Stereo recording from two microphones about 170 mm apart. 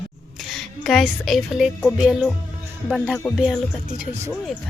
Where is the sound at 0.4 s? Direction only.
Centre (ahead or behind).